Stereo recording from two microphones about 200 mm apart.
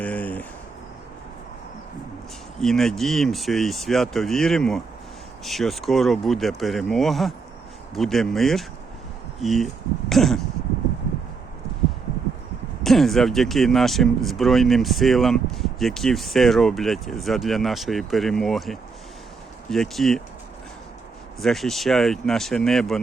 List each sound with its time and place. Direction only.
0.0 s a sound: 5° left (ahead or behind)
2.6 s speech: centre (ahead or behind)
12.8 s speech: centre (ahead or behind)
21.4 s speech: centre (ahead or behind)